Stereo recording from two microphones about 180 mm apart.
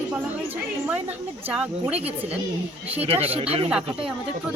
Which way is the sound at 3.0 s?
35° right (ahead or behind).